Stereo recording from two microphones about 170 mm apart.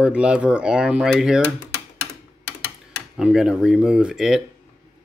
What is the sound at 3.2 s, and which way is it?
Speech, 5° right (ahead or behind).